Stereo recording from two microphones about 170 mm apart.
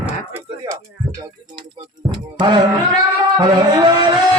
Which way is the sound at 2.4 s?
25° right (ahead or behind).